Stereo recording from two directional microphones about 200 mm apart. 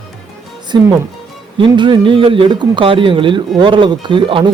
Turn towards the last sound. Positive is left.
turn(degrees=-25)  # may be behind; listen again after turning